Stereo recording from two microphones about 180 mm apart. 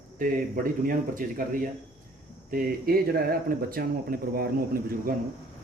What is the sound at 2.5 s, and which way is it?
Speech, 55° right (ahead or behind).